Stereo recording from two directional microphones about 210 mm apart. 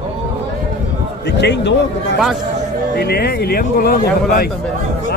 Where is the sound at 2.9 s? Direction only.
50° left (ahead or behind).